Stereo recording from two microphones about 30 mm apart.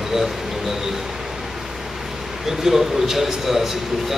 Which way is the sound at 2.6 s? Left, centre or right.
Centre.